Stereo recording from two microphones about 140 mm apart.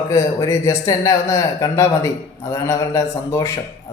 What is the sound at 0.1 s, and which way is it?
Speech, 20° left (ahead or behind).